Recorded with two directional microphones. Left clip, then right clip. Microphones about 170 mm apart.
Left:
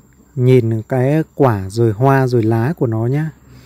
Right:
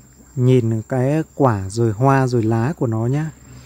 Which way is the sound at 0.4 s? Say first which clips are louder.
Left 4 dB; 20° left (ahead or behind).